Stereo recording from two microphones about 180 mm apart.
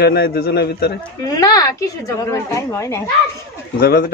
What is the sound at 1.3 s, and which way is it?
A woman's voice, 20° left (ahead or behind).